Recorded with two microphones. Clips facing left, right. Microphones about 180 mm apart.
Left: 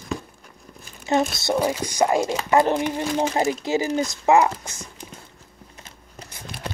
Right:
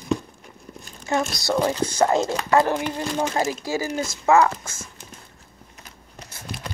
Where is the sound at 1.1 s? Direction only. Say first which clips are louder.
Left 2 dB; 20° left (ahead or behind).